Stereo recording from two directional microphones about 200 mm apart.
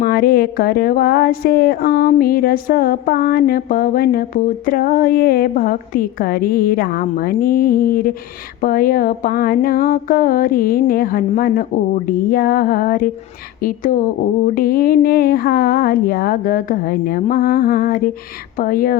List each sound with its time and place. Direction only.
0.0 s a woman's voice: 50° left (ahead or behind)